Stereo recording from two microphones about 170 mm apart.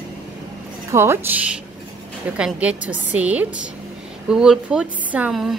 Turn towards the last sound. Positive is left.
turn(degrees=0)  # may be behind; listen again after turning